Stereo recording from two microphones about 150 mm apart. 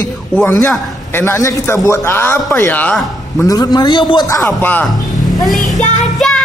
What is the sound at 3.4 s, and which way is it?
Speech, 25° left (ahead or behind).